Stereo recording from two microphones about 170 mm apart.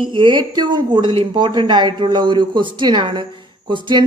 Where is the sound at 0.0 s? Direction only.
30° right (ahead or behind).